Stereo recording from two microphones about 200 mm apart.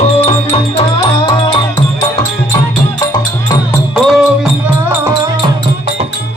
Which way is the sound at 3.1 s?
20° left (ahead or behind).